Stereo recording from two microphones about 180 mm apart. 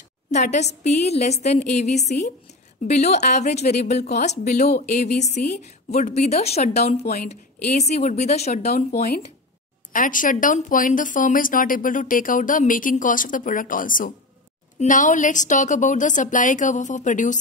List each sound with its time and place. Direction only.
0.3 s a woman's voice: 40° left (ahead or behind)